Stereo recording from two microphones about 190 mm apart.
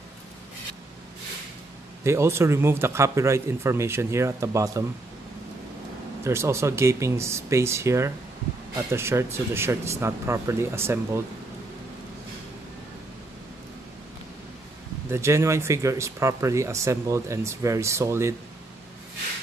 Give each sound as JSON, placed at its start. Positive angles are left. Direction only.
{"t": 2.0, "sound": "speech", "side_deg": -15}
{"t": 6.2, "sound": "speech", "side_deg": -15}
{"t": 15.0, "sound": "speech", "side_deg": -15}